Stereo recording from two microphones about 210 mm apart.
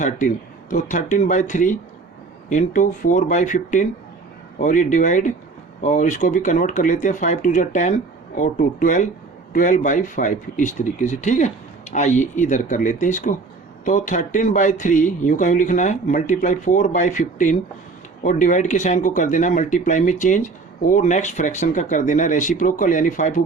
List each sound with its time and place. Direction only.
0.0 s speech: 40° left (ahead or behind)